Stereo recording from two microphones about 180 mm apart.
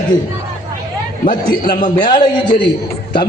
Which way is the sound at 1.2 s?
50° left (ahead or behind).